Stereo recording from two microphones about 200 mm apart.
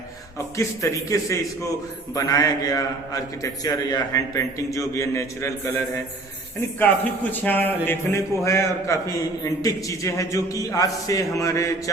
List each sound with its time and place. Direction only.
0.3 s a man's voice: 15° left (ahead or behind)